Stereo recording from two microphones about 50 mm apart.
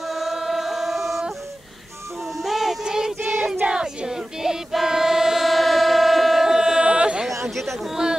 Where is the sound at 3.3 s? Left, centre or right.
Centre.